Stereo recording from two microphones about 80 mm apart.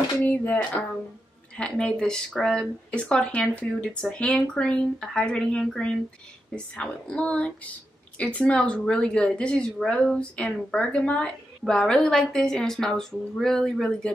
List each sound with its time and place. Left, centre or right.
0.3 s speech: centre